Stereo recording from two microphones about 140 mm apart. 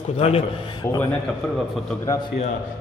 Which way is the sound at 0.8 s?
20° left (ahead or behind).